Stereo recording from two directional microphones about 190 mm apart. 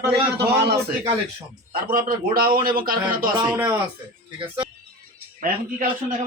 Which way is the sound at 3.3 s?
20° right (ahead or behind).